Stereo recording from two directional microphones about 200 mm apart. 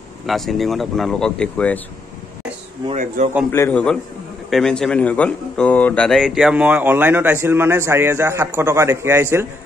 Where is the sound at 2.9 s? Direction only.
35° right (ahead or behind).